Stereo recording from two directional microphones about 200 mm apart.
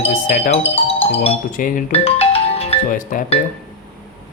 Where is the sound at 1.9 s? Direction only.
30° left (ahead or behind).